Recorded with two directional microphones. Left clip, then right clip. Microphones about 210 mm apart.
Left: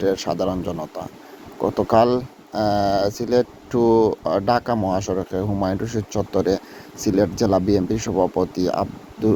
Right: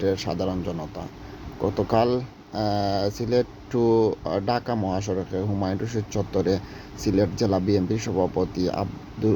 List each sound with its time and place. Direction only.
0.0 s speech: 20° left (ahead or behind)